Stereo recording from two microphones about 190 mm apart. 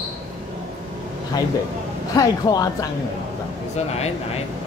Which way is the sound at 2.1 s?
20° left (ahead or behind).